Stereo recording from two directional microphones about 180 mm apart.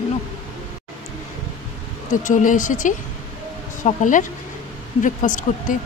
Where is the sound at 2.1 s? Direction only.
45° left (ahead or behind).